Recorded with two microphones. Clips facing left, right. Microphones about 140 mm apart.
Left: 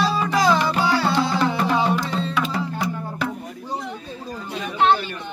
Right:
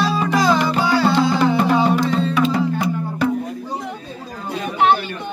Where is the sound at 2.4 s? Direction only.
20° right (ahead or behind).